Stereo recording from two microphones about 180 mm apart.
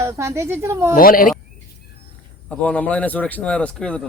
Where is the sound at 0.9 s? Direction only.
50° left (ahead or behind).